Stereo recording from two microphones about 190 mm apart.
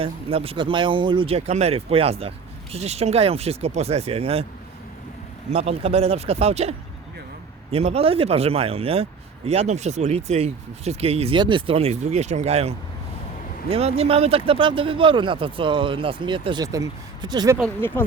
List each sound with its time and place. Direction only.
0.0 s speech: 30° right (ahead or behind)
5.5 s speech: 35° right (ahead or behind)
17.7 s speech: 10° left (ahead or behind)